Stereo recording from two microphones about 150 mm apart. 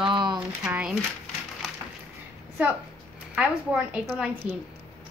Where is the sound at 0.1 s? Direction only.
30° right (ahead or behind).